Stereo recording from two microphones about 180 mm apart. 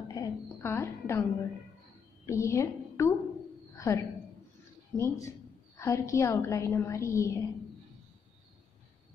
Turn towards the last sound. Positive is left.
turn(degrees=15)  # may be behind; listen again after turning